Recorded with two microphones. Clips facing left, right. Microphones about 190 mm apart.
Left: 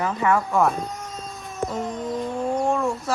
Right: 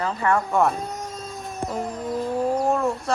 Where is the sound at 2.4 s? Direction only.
5° right (ahead or behind).